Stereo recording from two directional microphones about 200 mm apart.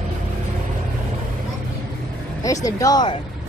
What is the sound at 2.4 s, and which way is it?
Speech, 15° left (ahead or behind).